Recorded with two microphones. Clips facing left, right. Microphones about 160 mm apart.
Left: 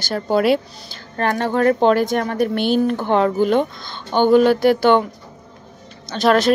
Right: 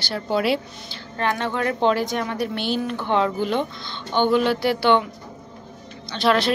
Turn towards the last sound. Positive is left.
turn(degrees=45)  # may be behind; listen again after turning